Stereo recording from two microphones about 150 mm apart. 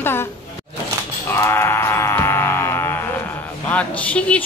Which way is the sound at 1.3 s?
15° left (ahead or behind).